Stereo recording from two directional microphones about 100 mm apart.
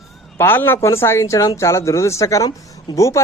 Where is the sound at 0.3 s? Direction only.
20° left (ahead or behind).